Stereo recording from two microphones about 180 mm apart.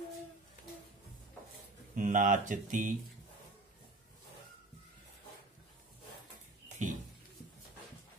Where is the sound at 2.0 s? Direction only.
45° right (ahead or behind).